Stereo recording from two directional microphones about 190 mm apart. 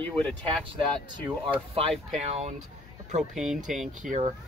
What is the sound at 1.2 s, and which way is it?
Speech, 25° right (ahead or behind).